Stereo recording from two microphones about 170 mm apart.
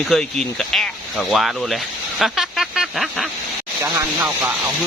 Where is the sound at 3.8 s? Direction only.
10° right (ahead or behind).